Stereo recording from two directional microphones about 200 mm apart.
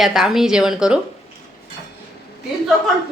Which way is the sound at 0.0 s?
Centre (ahead or behind).